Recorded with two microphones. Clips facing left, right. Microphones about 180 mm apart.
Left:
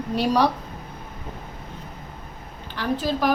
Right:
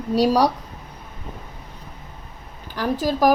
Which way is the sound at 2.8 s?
40° right (ahead or behind).